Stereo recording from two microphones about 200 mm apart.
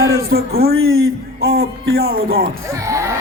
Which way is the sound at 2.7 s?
15° right (ahead or behind).